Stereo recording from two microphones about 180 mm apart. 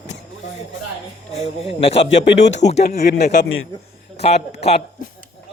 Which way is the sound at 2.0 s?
85° left.